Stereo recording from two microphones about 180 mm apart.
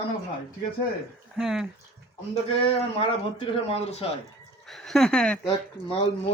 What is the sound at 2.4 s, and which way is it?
A man's voice, 30° left (ahead or behind).